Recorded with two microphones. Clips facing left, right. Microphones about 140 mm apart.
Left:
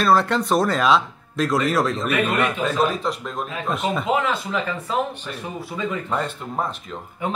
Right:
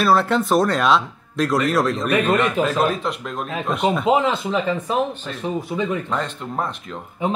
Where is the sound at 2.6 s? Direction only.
40° right (ahead or behind).